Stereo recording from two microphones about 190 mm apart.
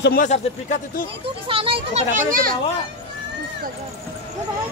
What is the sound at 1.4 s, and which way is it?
Speech, 30° right (ahead or behind).